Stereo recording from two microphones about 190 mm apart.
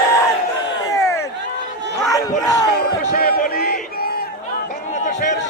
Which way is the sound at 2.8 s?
50° left (ahead or behind).